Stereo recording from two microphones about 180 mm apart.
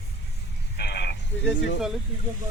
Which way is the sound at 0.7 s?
65° left (ahead or behind).